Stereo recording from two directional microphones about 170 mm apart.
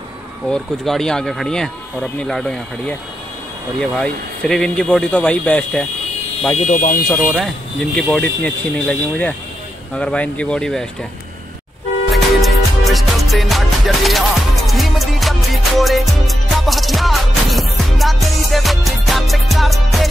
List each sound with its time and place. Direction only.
0.5 s speech: 5° left (ahead or behind)
4.0 s speech: 5° left (ahead or behind)
6.7 s speech: 50° left (ahead or behind)
7.1 s speech: 5° left (ahead or behind)
12.1 s music: centre (ahead or behind)